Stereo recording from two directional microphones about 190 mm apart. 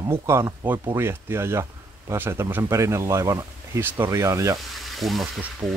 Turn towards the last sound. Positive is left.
turn(degrees=-5)  # may be behind; listen again after turning